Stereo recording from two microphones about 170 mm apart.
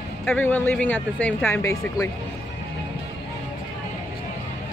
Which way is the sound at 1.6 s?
20° left (ahead or behind).